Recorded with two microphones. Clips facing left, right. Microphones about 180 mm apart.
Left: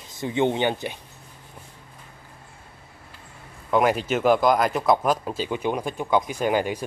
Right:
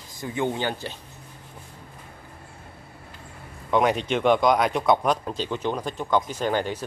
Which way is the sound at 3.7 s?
5° left (ahead or behind).